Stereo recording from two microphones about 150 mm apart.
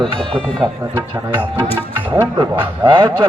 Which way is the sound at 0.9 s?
15° right (ahead or behind).